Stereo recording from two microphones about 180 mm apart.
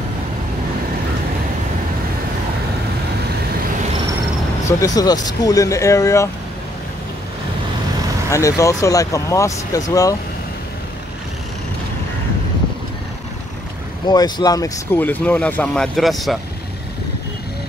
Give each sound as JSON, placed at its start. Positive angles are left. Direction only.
{"t": 4.6, "sound": "speech", "side_deg": 20}
{"t": 8.3, "sound": "speech", "side_deg": 15}
{"t": 14.0, "sound": "speech", "side_deg": 20}